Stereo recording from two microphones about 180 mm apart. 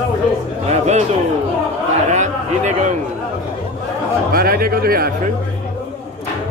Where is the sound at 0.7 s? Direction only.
40° right (ahead or behind).